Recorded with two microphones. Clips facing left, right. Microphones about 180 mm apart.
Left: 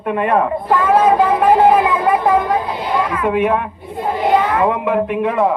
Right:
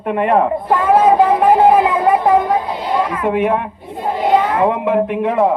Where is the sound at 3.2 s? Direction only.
25° right (ahead or behind).